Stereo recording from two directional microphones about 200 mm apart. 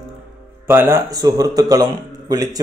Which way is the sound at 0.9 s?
20° right (ahead or behind).